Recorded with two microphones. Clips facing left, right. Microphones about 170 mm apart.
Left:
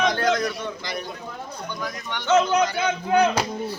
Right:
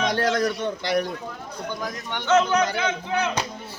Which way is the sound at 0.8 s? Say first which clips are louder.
Right 8 dB; 75° right (ahead or behind).